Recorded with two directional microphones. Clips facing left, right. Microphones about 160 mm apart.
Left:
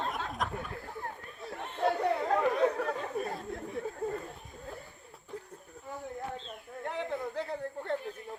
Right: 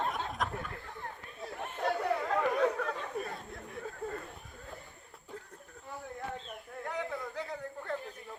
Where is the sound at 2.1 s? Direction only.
25° left (ahead or behind).